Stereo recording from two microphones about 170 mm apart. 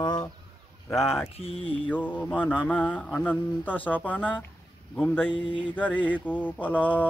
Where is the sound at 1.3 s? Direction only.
35° left (ahead or behind).